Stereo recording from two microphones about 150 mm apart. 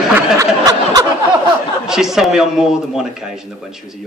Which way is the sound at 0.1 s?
25° right (ahead or behind).